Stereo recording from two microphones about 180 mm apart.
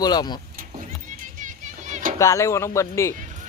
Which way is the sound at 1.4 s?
45° right (ahead or behind).